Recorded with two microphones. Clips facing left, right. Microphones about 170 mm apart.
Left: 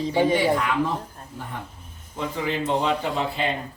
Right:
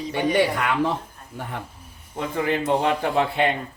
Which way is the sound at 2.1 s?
55° right (ahead or behind).